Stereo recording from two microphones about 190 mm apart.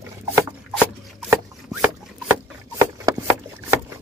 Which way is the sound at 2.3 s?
15° right (ahead or behind).